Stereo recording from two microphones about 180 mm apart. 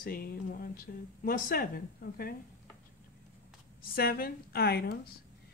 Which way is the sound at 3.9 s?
55° left (ahead or behind).